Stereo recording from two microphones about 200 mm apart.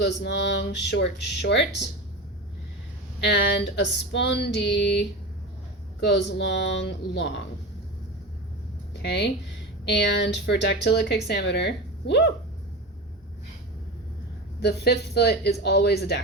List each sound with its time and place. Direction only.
0.0 s speech: 60° left (ahead or behind)
3.2 s speech: 60° left (ahead or behind)
6.1 s speech: 60° left (ahead or behind)
8.9 s speech: 60° left (ahead or behind)
14.6 s speech: 55° left (ahead or behind)